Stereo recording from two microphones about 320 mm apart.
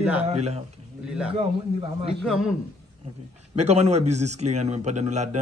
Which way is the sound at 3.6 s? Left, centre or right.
Right.